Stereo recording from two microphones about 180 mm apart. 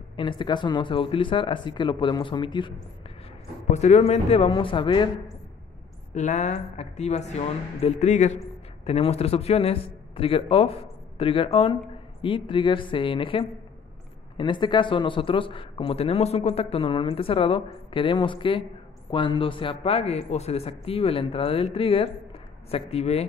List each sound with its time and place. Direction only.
0.1 s a man's voice: 25° left (ahead or behind)
3.7 s a man's voice: 40° left (ahead or behind)
6.1 s a man's voice: 40° left (ahead or behind)